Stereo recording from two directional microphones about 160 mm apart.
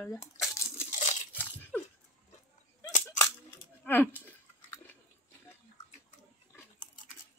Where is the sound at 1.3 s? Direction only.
10° left (ahead or behind).